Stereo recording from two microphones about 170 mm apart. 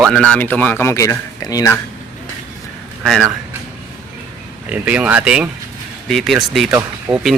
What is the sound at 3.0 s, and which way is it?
Speech, centre (ahead or behind).